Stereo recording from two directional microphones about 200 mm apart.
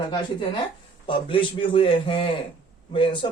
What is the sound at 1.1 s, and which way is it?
A man's voice, 25° left (ahead or behind).